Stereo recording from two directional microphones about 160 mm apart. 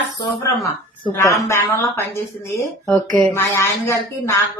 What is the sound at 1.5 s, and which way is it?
Speech, 15° left (ahead or behind).